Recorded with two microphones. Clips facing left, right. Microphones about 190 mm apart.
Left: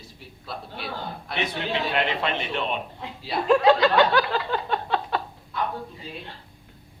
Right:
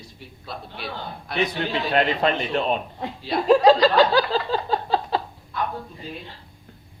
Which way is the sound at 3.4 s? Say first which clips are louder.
Right 3 dB; 35° right (ahead or behind).